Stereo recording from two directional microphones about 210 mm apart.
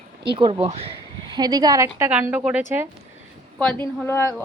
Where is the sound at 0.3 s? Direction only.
25° right (ahead or behind).